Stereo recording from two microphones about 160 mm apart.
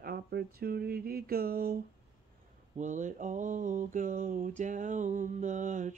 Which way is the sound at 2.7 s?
50° right (ahead or behind).